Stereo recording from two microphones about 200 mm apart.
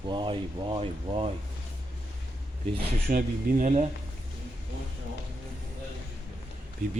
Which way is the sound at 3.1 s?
40° right (ahead or behind).